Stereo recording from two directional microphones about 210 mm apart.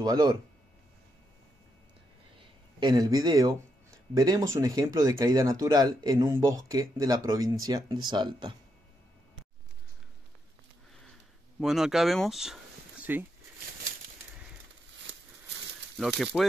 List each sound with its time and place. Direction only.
0.0 s speech: 20° right (ahead or behind)
2.8 s speech: 20° right (ahead or behind)
11.6 s speech: centre (ahead or behind)
16.3 s speech: centre (ahead or behind)